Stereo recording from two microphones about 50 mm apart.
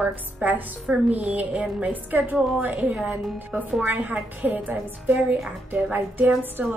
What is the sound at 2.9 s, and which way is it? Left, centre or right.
Speech, centre.